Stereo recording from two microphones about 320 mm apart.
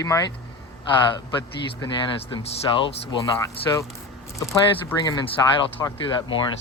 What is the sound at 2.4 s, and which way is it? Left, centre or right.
Speech, centre.